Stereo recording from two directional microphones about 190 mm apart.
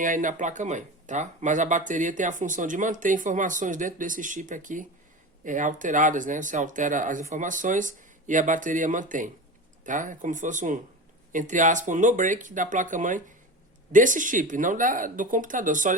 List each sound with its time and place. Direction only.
0.0 s speech: 45° right (ahead or behind)